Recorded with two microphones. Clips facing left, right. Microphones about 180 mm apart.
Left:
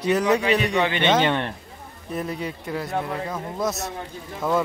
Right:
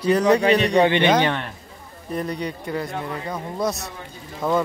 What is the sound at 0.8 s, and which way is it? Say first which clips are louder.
Speech: right 5 dB; 20° right (ahead or behind).